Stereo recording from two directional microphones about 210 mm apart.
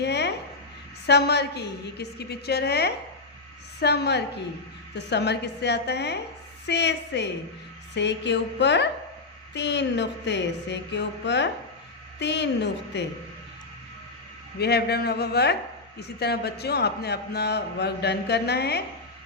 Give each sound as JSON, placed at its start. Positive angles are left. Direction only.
{"t": 0.0, "sound": "a sound", "side_deg": 55}
{"t": 1.0, "sound": "a man's voice", "side_deg": 50}
{"t": 14.6, "sound": "a man's voice", "side_deg": 50}